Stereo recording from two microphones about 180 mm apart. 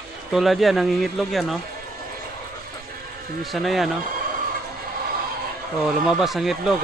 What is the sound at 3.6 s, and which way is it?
Speech, centre (ahead or behind).